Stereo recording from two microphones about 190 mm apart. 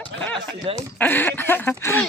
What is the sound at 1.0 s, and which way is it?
Speech, 10° left (ahead or behind).